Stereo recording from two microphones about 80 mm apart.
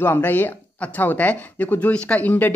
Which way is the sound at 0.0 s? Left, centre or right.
Left.